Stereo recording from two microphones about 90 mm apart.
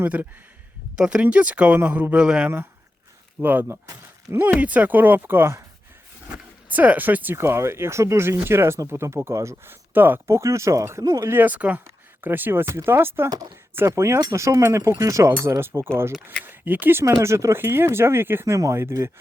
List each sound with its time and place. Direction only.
0.0 s speech: 20° right (ahead or behind)
3.4 s speech: 25° right (ahead or behind)